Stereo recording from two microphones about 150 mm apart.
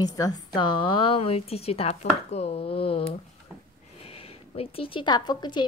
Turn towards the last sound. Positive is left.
turn(degrees=30)  # may be behind; listen again after turning